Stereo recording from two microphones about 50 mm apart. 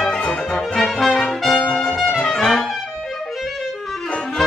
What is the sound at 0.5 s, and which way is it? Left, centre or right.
Brass instrument, centre.